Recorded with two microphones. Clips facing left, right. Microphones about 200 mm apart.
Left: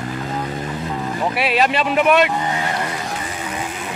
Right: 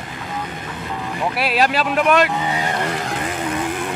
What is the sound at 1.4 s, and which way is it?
Speech, centre (ahead or behind).